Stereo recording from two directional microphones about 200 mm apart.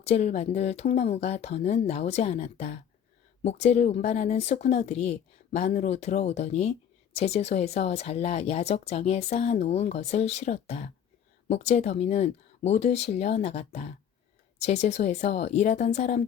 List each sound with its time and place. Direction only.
0.0 s speech: 30° left (ahead or behind)